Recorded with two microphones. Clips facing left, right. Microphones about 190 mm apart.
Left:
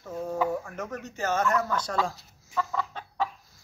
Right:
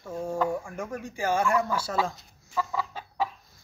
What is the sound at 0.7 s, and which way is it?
Speech, 10° right (ahead or behind).